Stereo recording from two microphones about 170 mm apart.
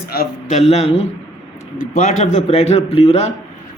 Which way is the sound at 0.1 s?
60° left (ahead or behind).